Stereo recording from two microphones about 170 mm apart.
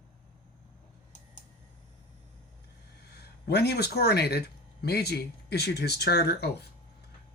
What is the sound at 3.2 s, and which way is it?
Speech, 70° left (ahead or behind).